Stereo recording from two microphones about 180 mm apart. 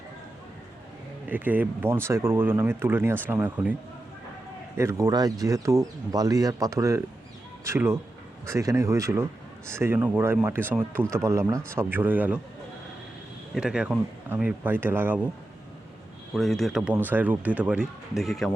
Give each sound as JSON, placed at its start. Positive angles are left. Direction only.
{"t": 1.3, "sound": "a man's voice", "side_deg": -10}
{"t": 4.8, "sound": "a man's voice", "side_deg": -15}
{"t": 13.5, "sound": "a man's voice", "side_deg": -5}
{"t": 16.3, "sound": "speech", "side_deg": 0}